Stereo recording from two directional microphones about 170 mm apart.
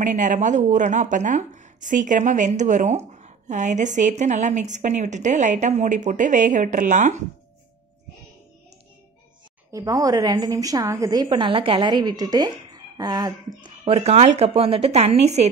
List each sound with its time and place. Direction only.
0.0 s a woman's voice: 45° right (ahead or behind)
9.7 s a woman's voice: 20° right (ahead or behind)
13.6 s a woman's voice: 35° right (ahead or behind)